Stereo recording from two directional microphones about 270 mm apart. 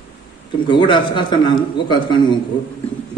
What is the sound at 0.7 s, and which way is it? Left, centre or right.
A man's voice, centre.